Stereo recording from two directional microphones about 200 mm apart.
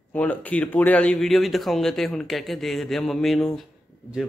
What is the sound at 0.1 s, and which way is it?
Speech, 5° left (ahead or behind).